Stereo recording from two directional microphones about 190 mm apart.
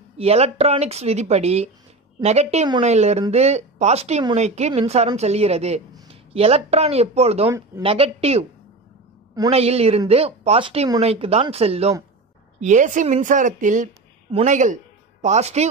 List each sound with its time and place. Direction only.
0.2 s speech: 35° right (ahead or behind)
7.4 s speech: 15° right (ahead or behind)
7.8 s speech: 30° right (ahead or behind)
9.5 s speech: 35° right (ahead or behind)